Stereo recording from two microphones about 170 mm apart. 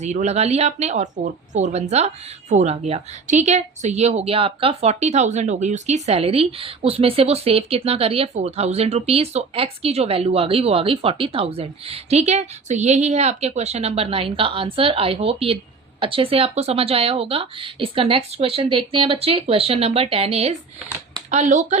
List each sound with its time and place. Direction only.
0.0 s a woman's voice: 40° right (ahead or behind)